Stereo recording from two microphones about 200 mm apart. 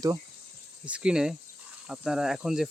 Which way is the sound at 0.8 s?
5° right (ahead or behind).